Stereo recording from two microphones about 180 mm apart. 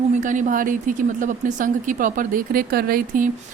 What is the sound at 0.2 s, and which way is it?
Speech, 45° right (ahead or behind).